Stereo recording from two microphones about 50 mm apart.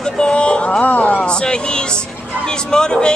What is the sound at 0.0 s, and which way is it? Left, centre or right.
Music, centre.